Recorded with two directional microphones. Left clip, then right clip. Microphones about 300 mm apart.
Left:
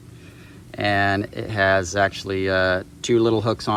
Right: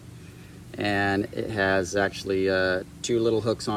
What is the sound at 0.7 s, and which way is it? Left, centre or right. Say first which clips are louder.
Speech: left 5 dB; centre.